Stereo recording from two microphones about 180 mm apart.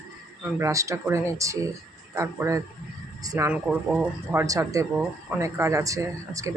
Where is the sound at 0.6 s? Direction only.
15° right (ahead or behind).